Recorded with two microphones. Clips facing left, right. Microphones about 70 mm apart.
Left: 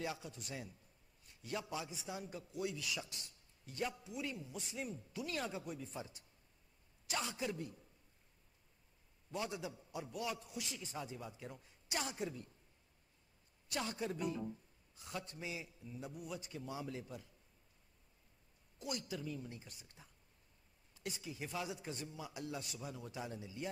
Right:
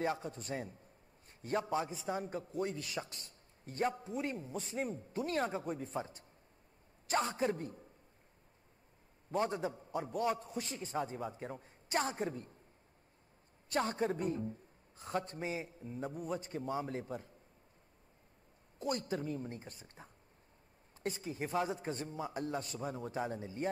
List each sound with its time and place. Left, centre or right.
0.0 s a man's voice: right
9.3 s a man's voice: right
13.7 s a man's voice: right
18.8 s a man's voice: right